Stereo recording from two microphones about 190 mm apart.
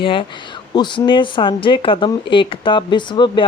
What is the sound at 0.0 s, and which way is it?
Speech, 25° left (ahead or behind).